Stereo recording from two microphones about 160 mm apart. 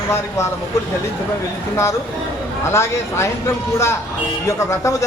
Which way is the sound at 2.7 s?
15° left (ahead or behind).